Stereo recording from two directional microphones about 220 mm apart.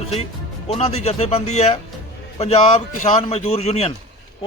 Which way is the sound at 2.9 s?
35° left (ahead or behind).